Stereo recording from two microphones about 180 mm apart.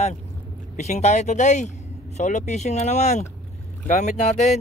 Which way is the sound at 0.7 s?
40° left (ahead or behind).